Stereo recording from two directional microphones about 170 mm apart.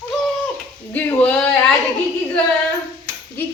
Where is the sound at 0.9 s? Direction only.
10° left (ahead or behind).